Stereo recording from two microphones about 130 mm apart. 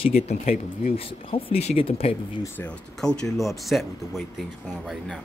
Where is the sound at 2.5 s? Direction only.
10° left (ahead or behind).